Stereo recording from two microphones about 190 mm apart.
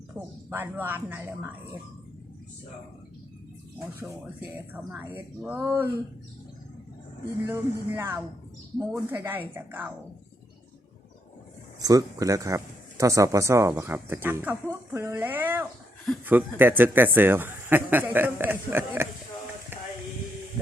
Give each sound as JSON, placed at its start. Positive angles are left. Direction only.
{"t": 0.1, "sound": "speech", "side_deg": -10}
{"t": 4.9, "sound": "speech", "side_deg": -10}
{"t": 7.4, "sound": "speech", "side_deg": -10}
{"t": 11.8, "sound": "speech", "side_deg": -20}
{"t": 19.7, "sound": "a sound", "side_deg": -10}